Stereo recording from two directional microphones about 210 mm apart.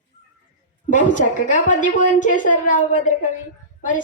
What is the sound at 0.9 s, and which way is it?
Speech, 35° left (ahead or behind).